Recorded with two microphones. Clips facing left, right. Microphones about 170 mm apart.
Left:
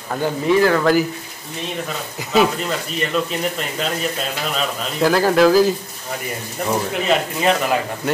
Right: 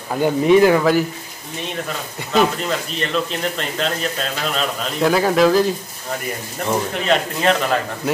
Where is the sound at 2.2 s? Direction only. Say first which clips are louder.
Left 1 dB; centre (ahead or behind).